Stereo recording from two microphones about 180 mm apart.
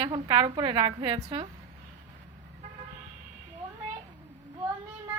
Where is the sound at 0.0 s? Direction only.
25° right (ahead or behind).